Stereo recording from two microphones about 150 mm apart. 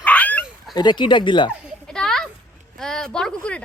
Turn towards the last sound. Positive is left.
turn(degrees=10)  # may be behind; listen again after turning